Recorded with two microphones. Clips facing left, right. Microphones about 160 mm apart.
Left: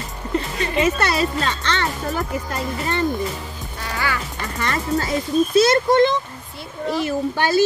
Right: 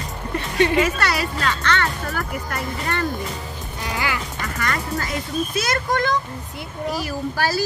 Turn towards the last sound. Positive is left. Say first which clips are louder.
# left 5 dB
turn(degrees=20)  # may be behind; listen again after turning